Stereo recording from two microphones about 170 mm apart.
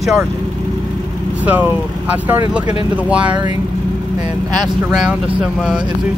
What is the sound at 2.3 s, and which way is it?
Speech, 10° right (ahead or behind).